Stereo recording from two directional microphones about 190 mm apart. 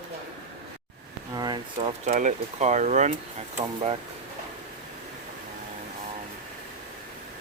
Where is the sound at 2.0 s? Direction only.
40° right (ahead or behind).